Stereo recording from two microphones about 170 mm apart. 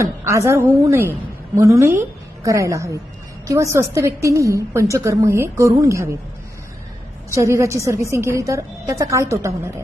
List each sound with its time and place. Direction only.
0.0 s a woman's voice: 15° right (ahead or behind)
7.3 s a woman's voice: 15° right (ahead or behind)